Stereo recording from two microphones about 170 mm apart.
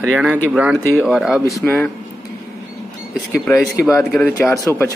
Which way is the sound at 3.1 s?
Centre (ahead or behind).